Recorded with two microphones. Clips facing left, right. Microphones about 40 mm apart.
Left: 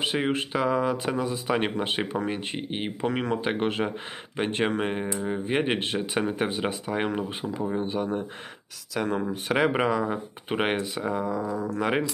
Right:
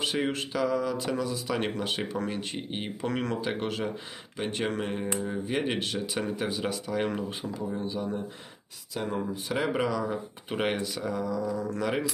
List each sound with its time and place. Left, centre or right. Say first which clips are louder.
0.0 s speech: left 3 dB; left
8.9 s speech: left 4 dB; left
9.3 s speech: left 6 dB; left
9.7 s speech: left 4 dB; left